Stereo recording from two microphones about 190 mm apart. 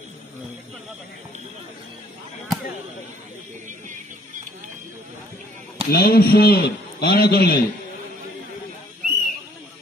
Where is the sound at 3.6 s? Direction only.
40° right (ahead or behind).